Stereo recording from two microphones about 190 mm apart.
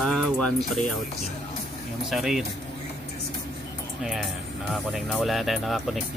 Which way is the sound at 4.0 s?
Centre (ahead or behind).